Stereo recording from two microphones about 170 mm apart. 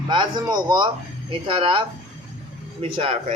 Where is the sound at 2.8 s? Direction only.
35° right (ahead or behind).